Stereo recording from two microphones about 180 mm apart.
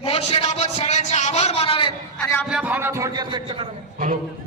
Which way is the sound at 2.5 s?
10° right (ahead or behind).